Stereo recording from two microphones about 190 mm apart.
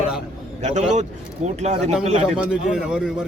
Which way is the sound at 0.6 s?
40° right (ahead or behind).